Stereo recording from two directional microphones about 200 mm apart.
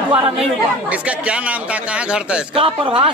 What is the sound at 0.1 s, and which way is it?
Speech, 25° right (ahead or behind).